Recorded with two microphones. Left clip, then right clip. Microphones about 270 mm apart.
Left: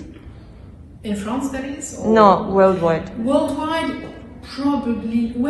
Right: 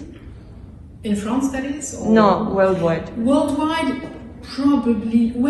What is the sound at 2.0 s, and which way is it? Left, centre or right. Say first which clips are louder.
A man's voice: left 3 dB; left.